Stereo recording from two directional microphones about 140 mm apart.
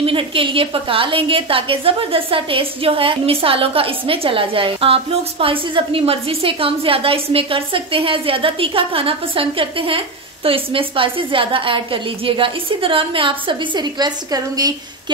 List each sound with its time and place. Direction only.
0.0 s a woman's voice: 40° right (ahead or behind)